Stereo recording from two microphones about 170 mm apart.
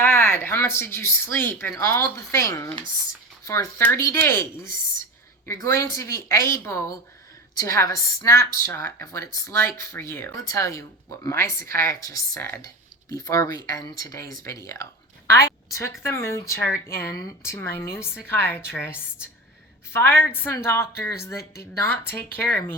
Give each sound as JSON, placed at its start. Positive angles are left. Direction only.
{"t": 0.0, "sound": "a woman's voice", "side_deg": 15}